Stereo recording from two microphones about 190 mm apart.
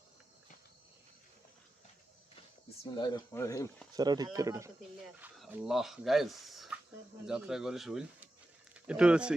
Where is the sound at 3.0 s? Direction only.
20° left (ahead or behind).